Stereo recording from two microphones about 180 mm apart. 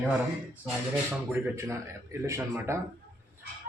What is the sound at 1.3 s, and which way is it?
A man's voice, 15° right (ahead or behind).